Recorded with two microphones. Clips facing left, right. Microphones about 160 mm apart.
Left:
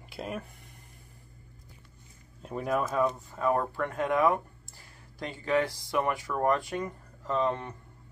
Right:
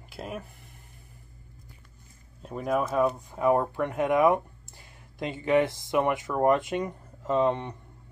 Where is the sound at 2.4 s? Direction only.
Centre (ahead or behind); by 7.8 s 20° right (ahead or behind).